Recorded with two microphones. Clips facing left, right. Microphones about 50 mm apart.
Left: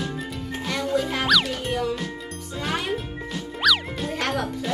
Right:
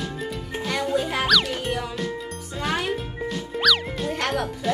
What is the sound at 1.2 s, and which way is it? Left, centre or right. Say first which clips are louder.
Music: even; centre.